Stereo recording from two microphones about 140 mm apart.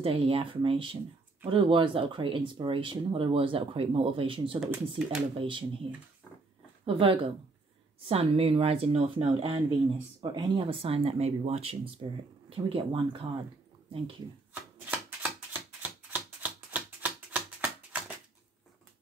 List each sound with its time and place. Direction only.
0.0 s speech: 40° right (ahead or behind)
4.6 s speech: 5° right (ahead or behind)
5.4 s speech: 40° right (ahead or behind)
6.9 s speech: 40° right (ahead or behind)
14.5 s typewriter: 10° right (ahead or behind)